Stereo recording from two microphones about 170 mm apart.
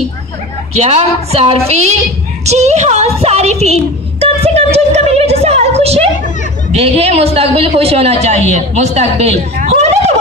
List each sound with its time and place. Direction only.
0.7 s a man's voice: 40° right (ahead or behind)
2.4 s a sound: 40° right (ahead or behind)
6.7 s a man's voice: 35° right (ahead or behind)